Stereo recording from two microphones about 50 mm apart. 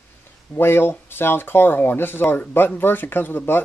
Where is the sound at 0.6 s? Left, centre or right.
Left.